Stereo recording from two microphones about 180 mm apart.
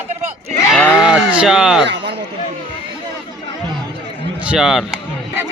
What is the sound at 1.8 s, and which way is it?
Speech, 70° right (ahead or behind).